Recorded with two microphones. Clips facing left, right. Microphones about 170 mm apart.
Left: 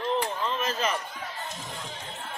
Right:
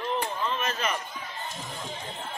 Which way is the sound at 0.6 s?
30° left (ahead or behind).